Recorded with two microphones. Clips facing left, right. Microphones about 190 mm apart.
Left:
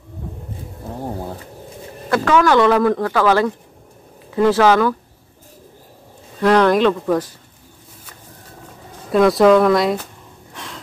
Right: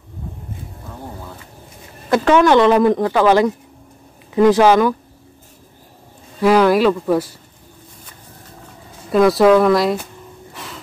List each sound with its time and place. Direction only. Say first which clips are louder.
2.0 s speech: right 2 dB; 20° right (ahead or behind)
6.4 s speech: right 1 dB; 5° right (ahead or behind)
9.1 s speech: even; centre (ahead or behind)
10.5 s gasp: left 1 dB; 5° right (ahead or behind)